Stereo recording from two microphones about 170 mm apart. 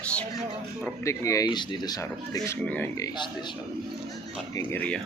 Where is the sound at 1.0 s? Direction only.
20° left (ahead or behind).